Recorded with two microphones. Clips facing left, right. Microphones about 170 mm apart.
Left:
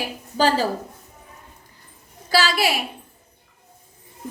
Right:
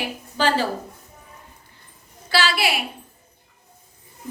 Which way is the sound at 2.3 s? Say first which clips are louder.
Left 2 dB; 40° left (ahead or behind).